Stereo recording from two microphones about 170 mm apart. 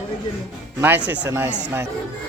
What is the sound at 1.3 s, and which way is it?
Speech, 15° right (ahead or behind).